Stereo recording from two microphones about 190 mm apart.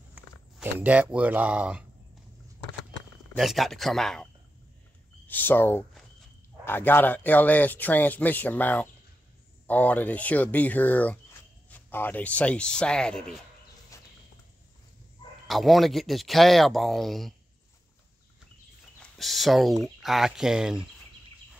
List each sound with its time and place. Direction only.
0.1 s speech: 10° right (ahead or behind)
3.3 s speech: centre (ahead or behind)
13.9 s a sound: 15° left (ahead or behind)
15.4 s speech: centre (ahead or behind)
19.0 s speech: centre (ahead or behind)